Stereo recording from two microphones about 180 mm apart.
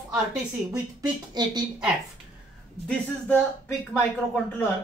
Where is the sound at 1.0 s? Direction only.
25° right (ahead or behind).